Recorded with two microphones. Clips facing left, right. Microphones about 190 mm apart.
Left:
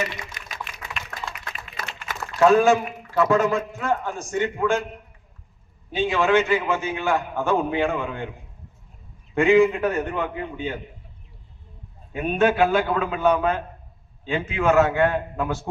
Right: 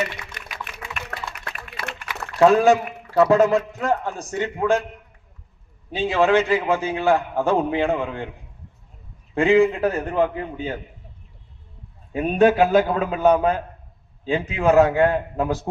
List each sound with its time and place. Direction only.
0.0 s a sound: 65° right (ahead or behind)
1.7 s a sound: 70° right (ahead or behind)
2.4 s a man's voice: 35° right (ahead or behind)
5.9 s a man's voice: 35° right (ahead or behind)
9.3 s a man's voice: 30° right (ahead or behind)
12.1 s a man's voice: 35° right (ahead or behind)